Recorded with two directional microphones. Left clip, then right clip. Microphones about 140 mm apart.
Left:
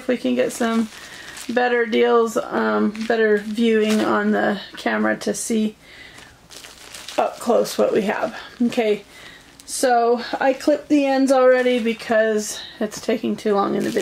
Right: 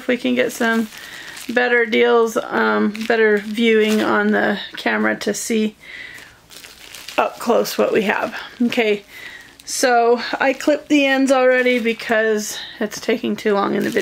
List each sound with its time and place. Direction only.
0.0 s speech: 35° right (ahead or behind)
7.2 s speech: 35° right (ahead or behind)